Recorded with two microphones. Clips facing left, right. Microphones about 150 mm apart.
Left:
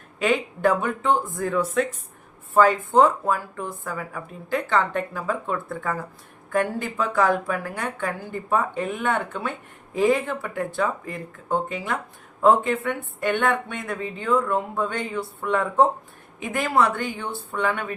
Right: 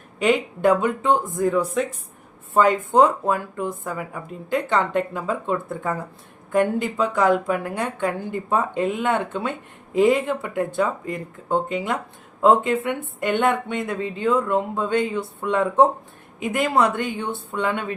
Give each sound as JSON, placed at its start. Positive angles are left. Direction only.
{"t": 0.3, "sound": "a woman's voice", "side_deg": -20}